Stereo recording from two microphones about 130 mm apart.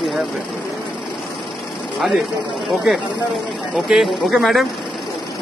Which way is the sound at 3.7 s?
5° right (ahead or behind).